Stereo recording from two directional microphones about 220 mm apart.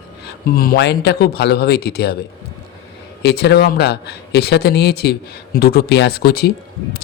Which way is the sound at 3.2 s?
50° left (ahead or behind).